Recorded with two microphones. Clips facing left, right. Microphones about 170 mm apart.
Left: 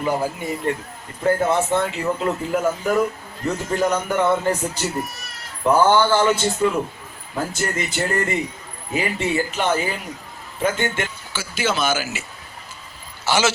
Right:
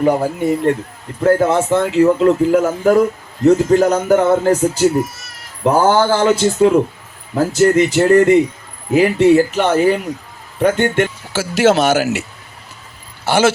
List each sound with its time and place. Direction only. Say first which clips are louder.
0.0 s speech: right 8 dB; 65° right (ahead or behind)
1.2 s speech: right 6 dB; 75° right (ahead or behind)
2.6 s speech: right 7 dB; 50° right (ahead or behind)
3.4 s speech: right 11 dB; 75° right (ahead or behind)
5.7 s speech: right 3 dB; 40° right (ahead or behind)
6.1 s speech: right 5 dB; 80° right
7.3 s speech: right 13 dB; 90° right
8.9 s speech: right 12 dB; 70° right (ahead or behind)
13.2 s speech: right 6 dB; 55° right (ahead or behind)